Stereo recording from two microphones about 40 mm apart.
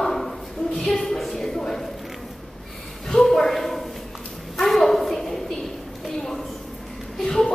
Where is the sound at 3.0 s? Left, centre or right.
Centre.